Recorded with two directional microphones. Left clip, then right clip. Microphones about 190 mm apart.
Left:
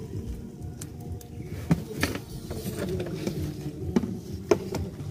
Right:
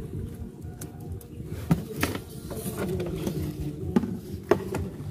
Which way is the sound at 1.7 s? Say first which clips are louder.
Even; 30° right (ahead or behind).